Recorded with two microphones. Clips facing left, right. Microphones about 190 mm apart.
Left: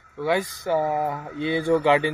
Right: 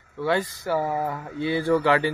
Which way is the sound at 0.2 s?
15° left (ahead or behind).